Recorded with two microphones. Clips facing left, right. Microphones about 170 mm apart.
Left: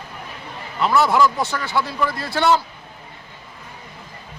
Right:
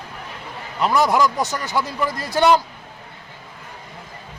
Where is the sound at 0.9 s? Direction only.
15° right (ahead or behind).